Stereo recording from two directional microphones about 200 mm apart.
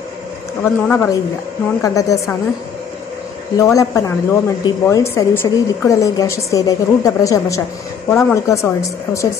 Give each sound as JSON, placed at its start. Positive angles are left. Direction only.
{"t": 0.7, "sound": "speech", "side_deg": 10}
{"t": 3.5, "sound": "speech", "side_deg": 15}